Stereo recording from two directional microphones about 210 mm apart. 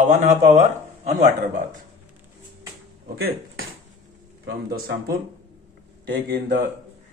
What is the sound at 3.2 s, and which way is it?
Speech, 45° right (ahead or behind).